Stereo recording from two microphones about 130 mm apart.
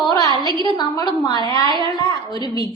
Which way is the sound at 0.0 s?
35° left (ahead or behind).